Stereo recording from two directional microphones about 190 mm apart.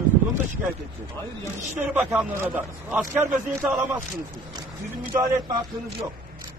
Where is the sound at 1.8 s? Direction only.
10° right (ahead or behind).